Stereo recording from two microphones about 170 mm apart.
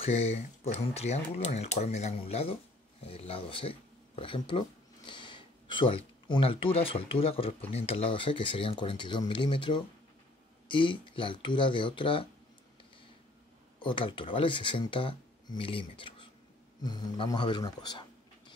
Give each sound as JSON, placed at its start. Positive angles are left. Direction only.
{"t": 0.0, "sound": "speech", "side_deg": 35}
{"t": 13.7, "sound": "speech", "side_deg": 30}